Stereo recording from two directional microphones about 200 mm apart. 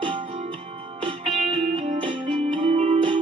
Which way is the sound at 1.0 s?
30° right (ahead or behind).